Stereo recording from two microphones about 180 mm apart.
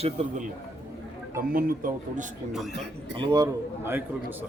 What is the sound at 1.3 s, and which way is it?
Speech, 50° right (ahead or behind).